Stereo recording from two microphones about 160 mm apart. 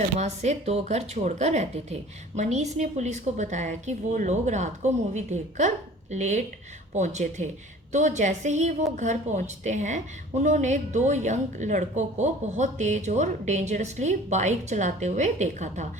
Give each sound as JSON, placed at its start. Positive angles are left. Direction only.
{"t": 0.2, "sound": "a woman's voice", "side_deg": -45}